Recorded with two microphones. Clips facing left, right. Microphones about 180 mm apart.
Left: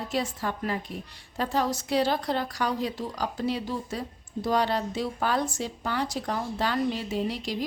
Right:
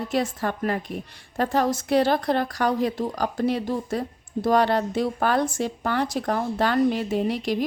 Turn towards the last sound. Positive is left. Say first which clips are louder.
# right 5 dB
turn(degrees=-55)  # may be behind; listen again after turning